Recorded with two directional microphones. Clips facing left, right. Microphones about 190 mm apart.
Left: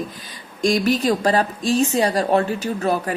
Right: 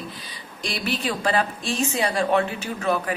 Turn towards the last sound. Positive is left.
turn(degrees=40)  # may be behind; listen again after turning